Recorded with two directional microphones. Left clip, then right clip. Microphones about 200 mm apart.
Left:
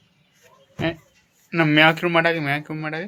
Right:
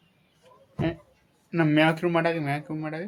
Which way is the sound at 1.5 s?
5° left (ahead or behind).